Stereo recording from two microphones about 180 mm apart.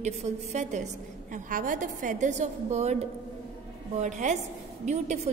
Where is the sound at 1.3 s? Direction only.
50° right (ahead or behind).